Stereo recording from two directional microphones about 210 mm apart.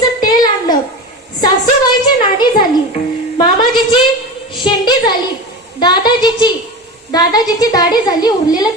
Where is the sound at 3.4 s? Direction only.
20° left (ahead or behind).